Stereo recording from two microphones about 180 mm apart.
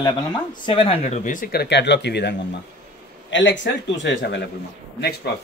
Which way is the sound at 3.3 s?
85° left.